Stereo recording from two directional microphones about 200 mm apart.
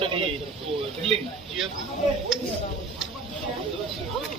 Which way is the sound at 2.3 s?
5° right (ahead or behind).